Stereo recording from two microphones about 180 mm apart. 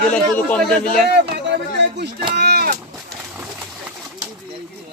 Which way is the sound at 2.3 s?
65° right (ahead or behind).